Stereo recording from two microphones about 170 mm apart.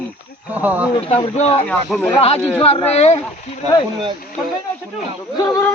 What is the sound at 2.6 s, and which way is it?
Speech, 35° left (ahead or behind).